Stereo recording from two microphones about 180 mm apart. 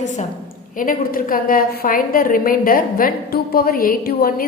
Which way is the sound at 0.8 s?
50° left (ahead or behind).